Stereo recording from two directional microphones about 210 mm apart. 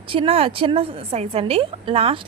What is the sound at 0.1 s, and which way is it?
A woman's voice, 25° right (ahead or behind).